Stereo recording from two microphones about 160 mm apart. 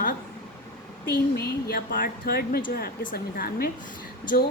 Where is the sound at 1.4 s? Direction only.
70° left (ahead or behind).